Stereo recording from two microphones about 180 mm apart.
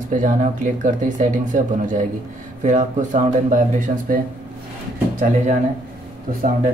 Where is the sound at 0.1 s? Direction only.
45° right (ahead or behind).